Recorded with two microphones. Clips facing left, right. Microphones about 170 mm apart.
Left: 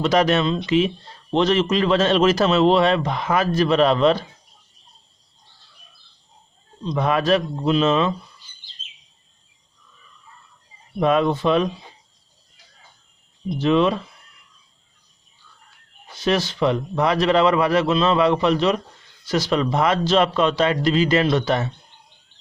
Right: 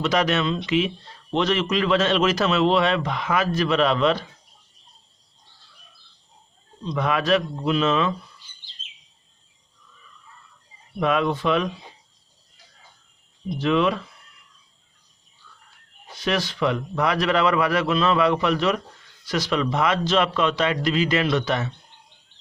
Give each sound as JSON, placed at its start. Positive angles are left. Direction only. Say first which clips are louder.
{"t": 0.0, "sound": "a man's voice", "louder": "left 4 dB", "side_deg": 35}
{"t": 6.8, "sound": "a man's voice", "louder": "left 3 dB", "side_deg": 30}
{"t": 11.0, "sound": "a man's voice", "louder": "left 3 dB", "side_deg": 30}
{"t": 13.6, "sound": "speech", "louder": "left 3 dB", "side_deg": 30}
{"t": 16.1, "sound": "a man's voice", "louder": "left 4 dB", "side_deg": 30}